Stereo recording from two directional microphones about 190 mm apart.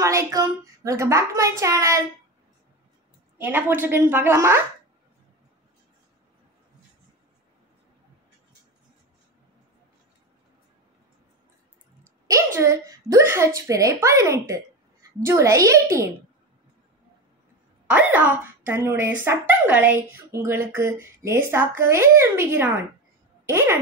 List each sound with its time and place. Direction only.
0.0 s a woman's voice: 15° right (ahead or behind)
3.3 s a woman's voice: 10° right (ahead or behind)
12.0 s a woman's voice: 15° right (ahead or behind)
17.8 s a woman's voice: 10° right (ahead or behind)